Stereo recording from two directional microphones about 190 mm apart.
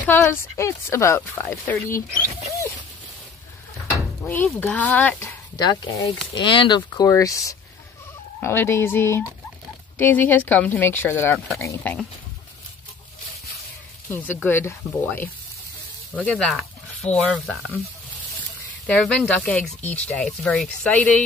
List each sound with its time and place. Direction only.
0.0 s speech: 10° left (ahead or behind)
4.2 s a sound: 10° left (ahead or behind)
4.6 s speech: 10° left (ahead or behind)
5.6 s speech: 20° left (ahead or behind)
14.1 s speech: 10° left (ahead or behind)
18.9 s speech: 5° left (ahead or behind)